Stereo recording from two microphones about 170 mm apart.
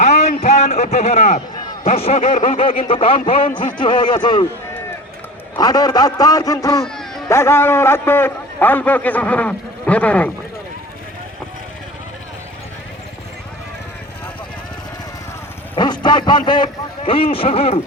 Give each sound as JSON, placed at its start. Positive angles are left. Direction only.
{"t": 0.0, "sound": "a sound", "side_deg": 45}
{"t": 0.8, "sound": "a man's voice", "side_deg": 40}
{"t": 5.5, "sound": "a man's voice", "side_deg": 25}
{"t": 6.8, "sound": "music", "side_deg": 5}
{"t": 7.3, "sound": "a man's voice", "side_deg": 15}
{"t": 15.7, "sound": "a sound", "side_deg": 25}
{"t": 16.5, "sound": "speech", "side_deg": 30}